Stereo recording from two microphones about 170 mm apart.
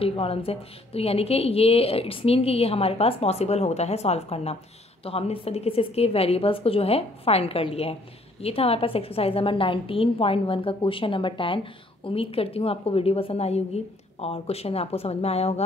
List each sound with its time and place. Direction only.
0.0 s a woman's voice: 35° left (ahead or behind)